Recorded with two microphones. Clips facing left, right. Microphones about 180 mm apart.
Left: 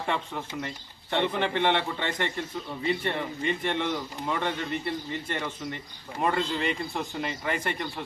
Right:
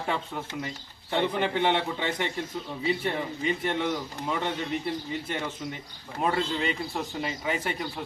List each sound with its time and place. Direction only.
0.0 s a man's voice: 5° right (ahead or behind)